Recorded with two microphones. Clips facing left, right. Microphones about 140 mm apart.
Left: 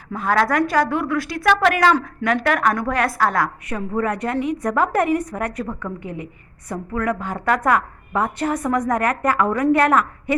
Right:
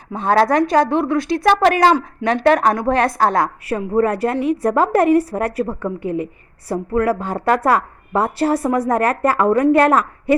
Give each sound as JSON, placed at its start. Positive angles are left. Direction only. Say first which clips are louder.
{"t": 0.1, "sound": "a woman's voice", "louder": "right 4 dB", "side_deg": -25}
{"t": 6.0, "sound": "a woman's voice", "louder": "right 9 dB", "side_deg": 20}
{"t": 6.7, "sound": "a woman's voice", "louder": "right 6 dB", "side_deg": -30}